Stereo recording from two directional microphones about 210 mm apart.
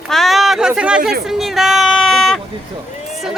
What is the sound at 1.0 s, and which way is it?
Speech, 45° right (ahead or behind).